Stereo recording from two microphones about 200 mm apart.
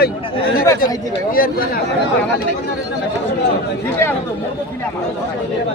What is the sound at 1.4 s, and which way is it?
Speech, 45° left (ahead or behind).